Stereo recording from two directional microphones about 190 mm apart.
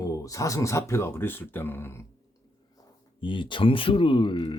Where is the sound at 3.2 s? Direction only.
25° left (ahead or behind).